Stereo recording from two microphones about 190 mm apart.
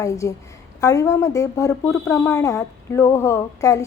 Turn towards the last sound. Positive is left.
turn(degrees=15)  # may be behind; listen again after turning